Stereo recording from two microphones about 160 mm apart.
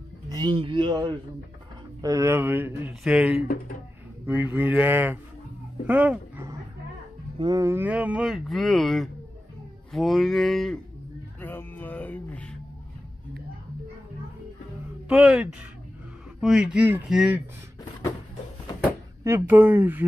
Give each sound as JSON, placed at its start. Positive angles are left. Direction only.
{"t": 0.3, "sound": "a man's voice", "side_deg": -30}
{"t": 7.3, "sound": "a man's voice", "side_deg": -25}
{"t": 11.4, "sound": "music", "side_deg": 10}
{"t": 15.0, "sound": "a man's voice", "side_deg": -5}
{"t": 19.2, "sound": "speech", "side_deg": -15}